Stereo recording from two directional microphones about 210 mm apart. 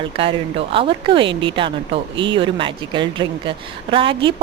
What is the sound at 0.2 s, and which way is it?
Speech, 25° right (ahead or behind).